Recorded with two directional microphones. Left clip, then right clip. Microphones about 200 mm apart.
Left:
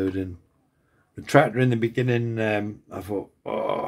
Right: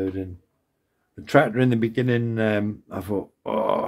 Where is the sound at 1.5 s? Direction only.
15° right (ahead or behind).